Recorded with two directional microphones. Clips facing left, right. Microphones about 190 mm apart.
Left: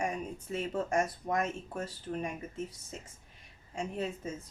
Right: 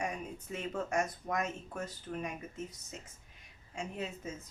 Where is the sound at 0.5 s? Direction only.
30° left (ahead or behind).